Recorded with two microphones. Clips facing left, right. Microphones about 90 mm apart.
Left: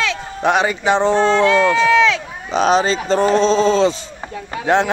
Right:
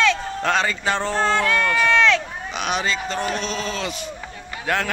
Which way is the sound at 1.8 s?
5° left (ahead or behind).